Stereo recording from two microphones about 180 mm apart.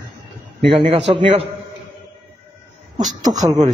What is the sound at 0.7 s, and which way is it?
Speech, 30° right (ahead or behind).